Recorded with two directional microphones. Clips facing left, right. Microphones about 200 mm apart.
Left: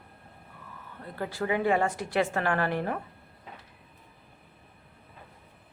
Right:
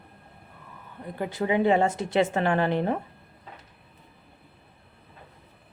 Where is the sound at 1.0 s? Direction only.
20° right (ahead or behind).